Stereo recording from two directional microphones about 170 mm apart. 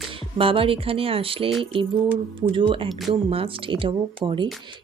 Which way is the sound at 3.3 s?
35° right (ahead or behind).